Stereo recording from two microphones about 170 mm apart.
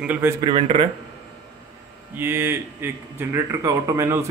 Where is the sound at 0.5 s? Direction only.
35° right (ahead or behind).